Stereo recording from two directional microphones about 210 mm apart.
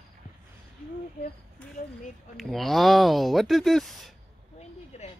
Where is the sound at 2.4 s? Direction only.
Centre (ahead or behind).